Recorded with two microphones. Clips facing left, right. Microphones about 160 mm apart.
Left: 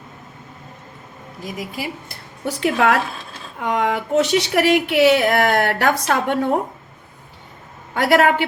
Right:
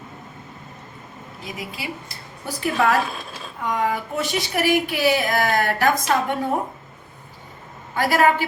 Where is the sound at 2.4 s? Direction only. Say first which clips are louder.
Left 3 dB; 75° left (ahead or behind).